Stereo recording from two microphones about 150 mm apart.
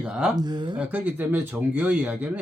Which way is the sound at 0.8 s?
10° right (ahead or behind).